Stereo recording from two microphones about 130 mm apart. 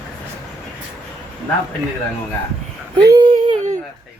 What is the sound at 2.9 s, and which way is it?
Speech, 35° right (ahead or behind).